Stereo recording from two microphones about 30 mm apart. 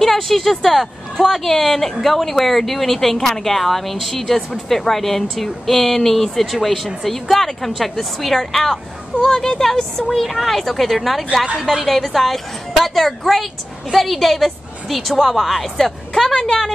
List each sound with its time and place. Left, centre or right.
0.0 s speech: centre
10.0 s a woman's voice: centre